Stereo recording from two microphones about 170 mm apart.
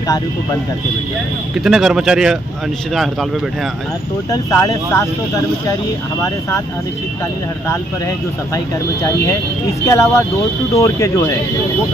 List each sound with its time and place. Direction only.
1.6 s a man's voice: centre (ahead or behind)
4.3 s speech: 20° left (ahead or behind)
9.0 s speech: 20° left (ahead or behind)